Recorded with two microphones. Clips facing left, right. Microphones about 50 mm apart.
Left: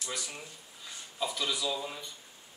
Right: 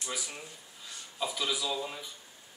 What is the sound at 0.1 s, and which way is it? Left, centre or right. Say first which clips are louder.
Speech: right 1 dB; centre.